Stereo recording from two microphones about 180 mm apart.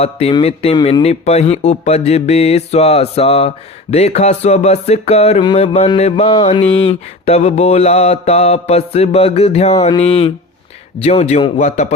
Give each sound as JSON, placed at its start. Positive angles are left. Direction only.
{"t": 0.0, "sound": "music", "side_deg": 35}